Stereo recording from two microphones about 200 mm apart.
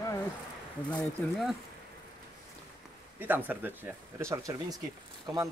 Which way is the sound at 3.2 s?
10° right (ahead or behind).